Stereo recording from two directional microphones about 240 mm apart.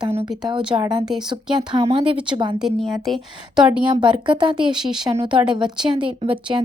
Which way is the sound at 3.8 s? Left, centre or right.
Centre.